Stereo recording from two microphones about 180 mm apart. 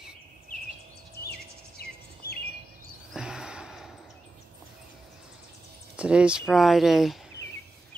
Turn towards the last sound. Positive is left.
turn(degrees=0)  # may be behind; listen again after turning